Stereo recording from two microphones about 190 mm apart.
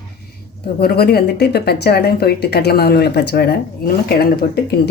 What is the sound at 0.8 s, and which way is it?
Speech, 55° left (ahead or behind).